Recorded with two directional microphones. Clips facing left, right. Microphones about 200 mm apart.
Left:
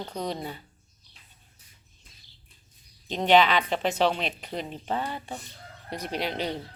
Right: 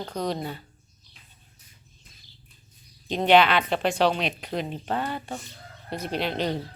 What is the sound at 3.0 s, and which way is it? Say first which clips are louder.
Speech: right 2 dB; 10° right (ahead or behind).